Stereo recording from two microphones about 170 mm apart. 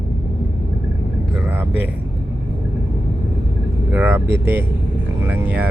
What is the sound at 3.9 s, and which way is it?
Speech, 10° right (ahead or behind).